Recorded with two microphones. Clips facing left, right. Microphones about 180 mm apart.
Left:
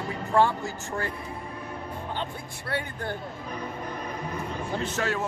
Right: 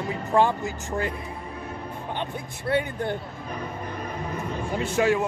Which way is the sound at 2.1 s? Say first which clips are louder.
Right 2 dB; 20° right (ahead or behind).